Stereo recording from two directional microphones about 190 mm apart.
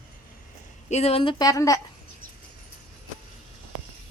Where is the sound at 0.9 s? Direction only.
35° left (ahead or behind); by 1.8 s 15° left (ahead or behind).